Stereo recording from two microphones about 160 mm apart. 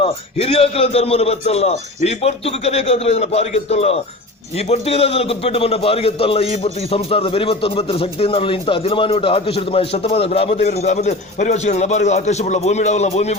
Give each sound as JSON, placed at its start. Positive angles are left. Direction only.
{"t": 0.0, "sound": "a man's voice", "side_deg": 35}